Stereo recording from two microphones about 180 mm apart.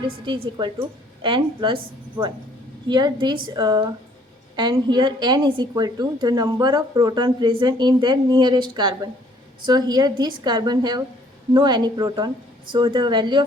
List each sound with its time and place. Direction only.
0.3 s a woman's voice: 25° right (ahead or behind)